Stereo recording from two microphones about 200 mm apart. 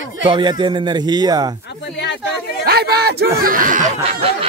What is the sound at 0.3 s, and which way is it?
A man's voice, 20° right (ahead or behind).